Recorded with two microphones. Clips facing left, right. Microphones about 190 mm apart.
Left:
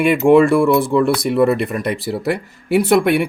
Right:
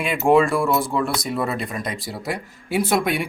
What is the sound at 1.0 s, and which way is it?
Speech, 65° left (ahead or behind).